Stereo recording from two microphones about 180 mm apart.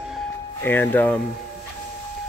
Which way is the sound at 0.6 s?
10° left (ahead or behind).